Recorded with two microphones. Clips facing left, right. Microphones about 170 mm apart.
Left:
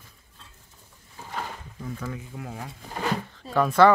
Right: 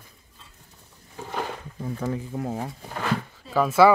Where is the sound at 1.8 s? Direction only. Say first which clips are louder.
Right 6 dB; 30° right (ahead or behind).